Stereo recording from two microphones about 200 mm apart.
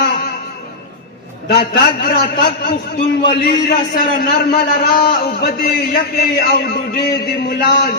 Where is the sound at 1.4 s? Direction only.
50° left (ahead or behind).